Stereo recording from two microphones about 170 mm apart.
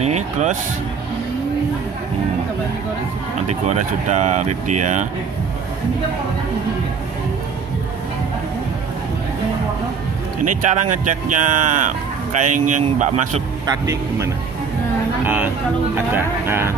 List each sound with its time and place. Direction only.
0.0 s speech: 45° right (ahead or behind)
3.4 s speech: 45° right (ahead or behind)
10.7 s speech: 45° right (ahead or behind)
13.7 s speech: 20° right (ahead or behind)